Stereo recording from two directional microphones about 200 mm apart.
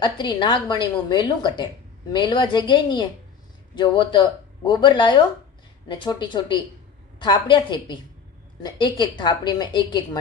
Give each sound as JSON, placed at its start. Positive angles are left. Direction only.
{"t": 0.0, "sound": "a woman's voice", "side_deg": 20}